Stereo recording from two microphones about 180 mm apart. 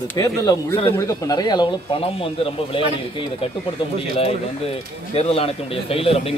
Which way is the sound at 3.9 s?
30° left (ahead or behind).